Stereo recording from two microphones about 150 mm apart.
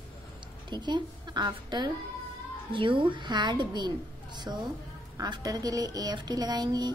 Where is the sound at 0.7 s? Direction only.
30° right (ahead or behind).